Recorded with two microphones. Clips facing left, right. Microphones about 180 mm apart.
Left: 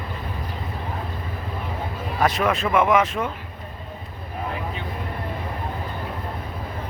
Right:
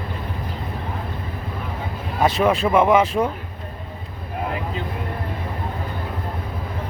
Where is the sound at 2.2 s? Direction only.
30° right (ahead or behind).